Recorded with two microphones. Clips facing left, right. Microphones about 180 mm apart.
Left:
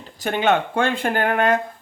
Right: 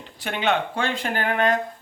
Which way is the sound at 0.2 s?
45° left (ahead or behind).